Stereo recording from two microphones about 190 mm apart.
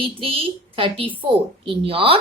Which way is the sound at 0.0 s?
30° right (ahead or behind).